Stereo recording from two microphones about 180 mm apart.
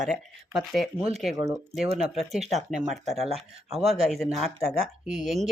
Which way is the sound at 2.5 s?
Centre (ahead or behind).